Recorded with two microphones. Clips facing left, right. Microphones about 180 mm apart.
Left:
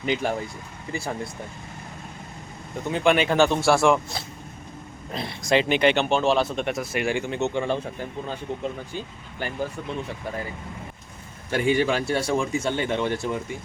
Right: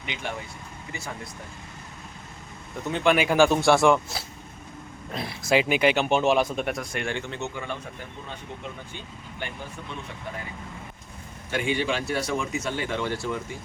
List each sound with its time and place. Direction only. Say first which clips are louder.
0.0 s speech: left 9 dB; 40° left (ahead or behind)
2.8 s speech: left 1 dB; centre (ahead or behind); by 7.6 s 20° left (ahead or behind)
11.5 s speech: left 5 dB; 40° left (ahead or behind)
12.1 s speech: left 4 dB; 30° left (ahead or behind)